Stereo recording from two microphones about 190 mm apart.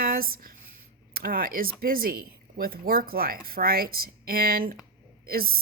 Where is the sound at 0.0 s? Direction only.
50° right (ahead or behind).